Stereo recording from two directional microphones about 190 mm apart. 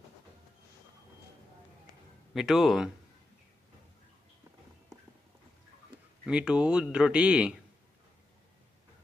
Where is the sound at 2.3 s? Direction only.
Centre (ahead or behind).